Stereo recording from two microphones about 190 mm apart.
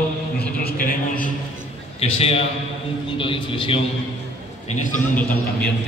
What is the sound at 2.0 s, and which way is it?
A man's voice, 30° left (ahead or behind).